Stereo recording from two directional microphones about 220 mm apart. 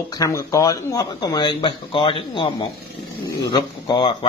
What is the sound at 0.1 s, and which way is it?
Speech, 15° left (ahead or behind).